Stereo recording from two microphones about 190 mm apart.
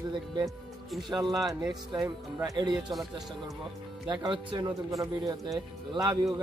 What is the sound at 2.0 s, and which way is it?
Speech, 20° right (ahead or behind).